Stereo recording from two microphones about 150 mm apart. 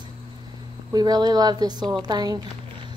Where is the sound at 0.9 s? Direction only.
25° right (ahead or behind).